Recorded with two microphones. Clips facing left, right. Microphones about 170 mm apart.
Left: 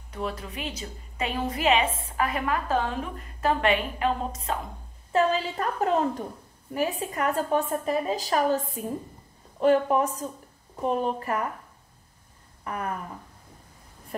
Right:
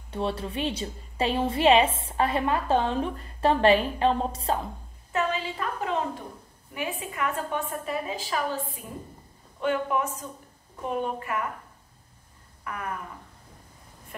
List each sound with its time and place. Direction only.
0.1 s a woman's voice: 30° right (ahead or behind)
5.1 s a woman's voice: 40° left (ahead or behind)
12.7 s a woman's voice: 30° left (ahead or behind)